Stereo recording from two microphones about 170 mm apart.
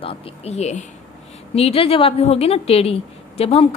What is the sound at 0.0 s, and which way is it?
Speech, 35° left (ahead or behind).